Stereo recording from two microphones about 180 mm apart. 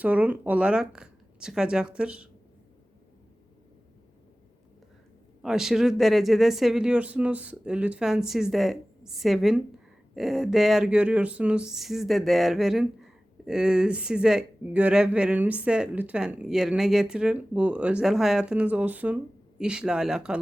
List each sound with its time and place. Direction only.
0.0 s speech: 10° right (ahead or behind)
5.4 s speech: centre (ahead or behind)